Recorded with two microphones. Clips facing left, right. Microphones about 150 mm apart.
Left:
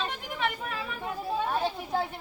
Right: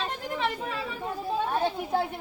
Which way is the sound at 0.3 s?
30° right (ahead or behind).